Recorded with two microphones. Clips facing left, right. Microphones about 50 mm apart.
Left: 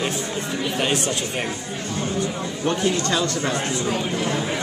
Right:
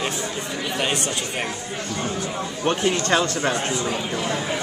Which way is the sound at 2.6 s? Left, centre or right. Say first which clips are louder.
Even; right.